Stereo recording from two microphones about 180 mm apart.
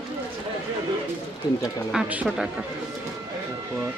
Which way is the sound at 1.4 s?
20° left (ahead or behind).